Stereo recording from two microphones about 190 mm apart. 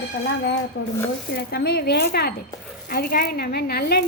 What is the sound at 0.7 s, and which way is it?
A woman's voice, 65° left (ahead or behind).